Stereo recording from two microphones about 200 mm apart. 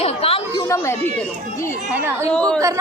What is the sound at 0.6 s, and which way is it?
Speech, 15° left (ahead or behind).